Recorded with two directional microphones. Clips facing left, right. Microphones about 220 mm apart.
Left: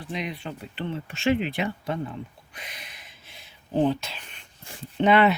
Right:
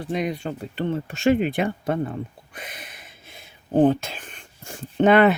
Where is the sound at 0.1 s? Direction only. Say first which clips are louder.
Right 6 dB; 45° right (ahead or behind).